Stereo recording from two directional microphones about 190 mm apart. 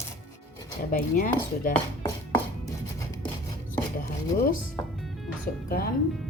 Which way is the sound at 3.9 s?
50° left (ahead or behind).